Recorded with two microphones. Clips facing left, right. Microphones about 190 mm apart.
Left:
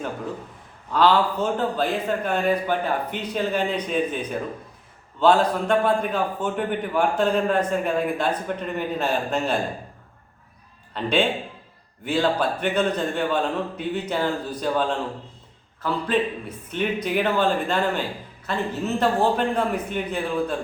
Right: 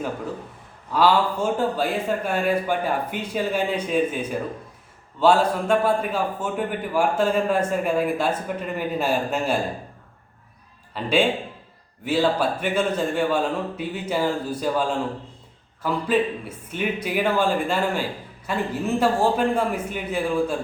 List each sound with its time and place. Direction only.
0.9 s a man's voice: 10° right (ahead or behind)
10.9 s a man's voice: 5° right (ahead or behind)